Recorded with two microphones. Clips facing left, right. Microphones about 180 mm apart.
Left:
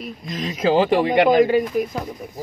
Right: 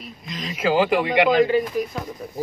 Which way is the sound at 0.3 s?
40° left (ahead or behind).